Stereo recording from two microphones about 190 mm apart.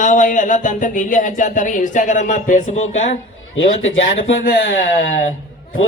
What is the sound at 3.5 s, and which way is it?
Speech, 90° left.